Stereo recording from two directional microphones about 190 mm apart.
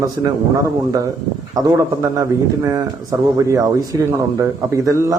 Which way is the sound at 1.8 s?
15° right (ahead or behind).